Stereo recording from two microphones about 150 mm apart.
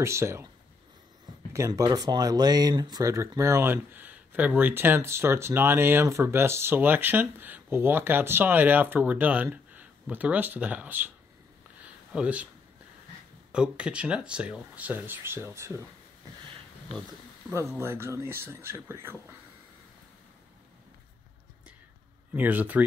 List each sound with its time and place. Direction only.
0.0 s speech: 20° right (ahead or behind)
1.5 s speech: 20° right (ahead or behind)
11.8 s a sound: 10° right (ahead or behind)
13.5 s speech: 5° right (ahead or behind)
17.7 s speech: 15° right (ahead or behind)
22.3 s speech: 10° right (ahead or behind)